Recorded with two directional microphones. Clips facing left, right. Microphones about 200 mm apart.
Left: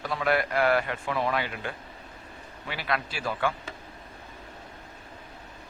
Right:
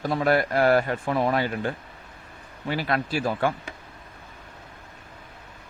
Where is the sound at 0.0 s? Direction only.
40° right (ahead or behind).